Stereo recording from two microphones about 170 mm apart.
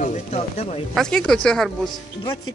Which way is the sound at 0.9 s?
5° left (ahead or behind).